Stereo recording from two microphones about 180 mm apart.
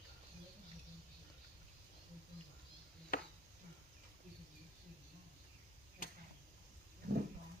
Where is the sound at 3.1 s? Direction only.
55° left (ahead or behind).